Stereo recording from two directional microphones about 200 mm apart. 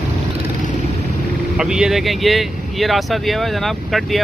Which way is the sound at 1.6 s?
5° right (ahead or behind).